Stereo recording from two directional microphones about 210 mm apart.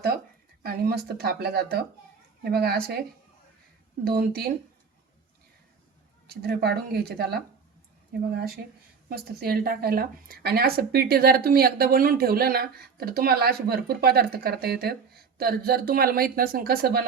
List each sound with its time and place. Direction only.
0.6 s speech: 45° right (ahead or behind)
4.0 s speech: 45° right (ahead or behind)
6.4 s speech: 50° right (ahead or behind)
9.0 s speech: 50° right (ahead or behind)